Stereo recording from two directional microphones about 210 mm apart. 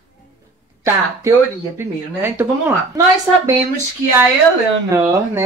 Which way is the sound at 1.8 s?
10° right (ahead or behind).